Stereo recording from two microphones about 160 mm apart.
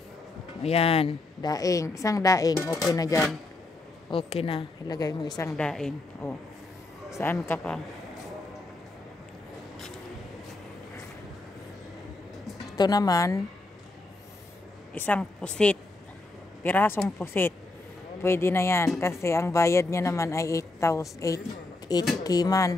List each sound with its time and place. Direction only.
0.6 s speech: 40° left (ahead or behind)
1.4 s a woman's voice: 20° left (ahead or behind)
4.1 s speech: 40° left (ahead or behind)
4.8 s a woman's voice: 25° left (ahead or behind)
5.6 s a woman's voice: 5° left (ahead or behind)
7.1 s a woman's voice: 20° left (ahead or behind)
12.7 s a woman's voice: 25° left (ahead or behind)
15.0 s a woman's voice: 10° left (ahead or behind)